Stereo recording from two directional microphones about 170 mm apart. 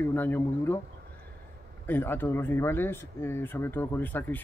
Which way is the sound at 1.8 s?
10° left (ahead or behind).